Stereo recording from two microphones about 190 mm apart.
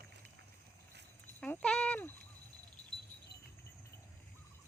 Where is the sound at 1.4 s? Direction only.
5° left (ahead or behind).